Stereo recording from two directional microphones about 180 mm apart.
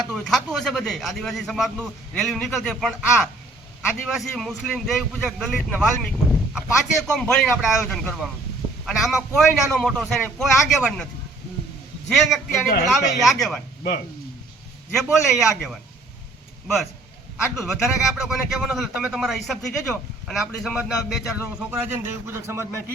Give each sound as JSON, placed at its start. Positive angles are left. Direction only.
{"t": 0.1, "sound": "a man's voice", "side_deg": 0}
{"t": 12.6, "sound": "a man's voice", "side_deg": 50}
{"t": 12.9, "sound": "a man's voice", "side_deg": 0}
{"t": 14.9, "sound": "a man's voice", "side_deg": 0}
{"t": 17.4, "sound": "a man's voice", "side_deg": 0}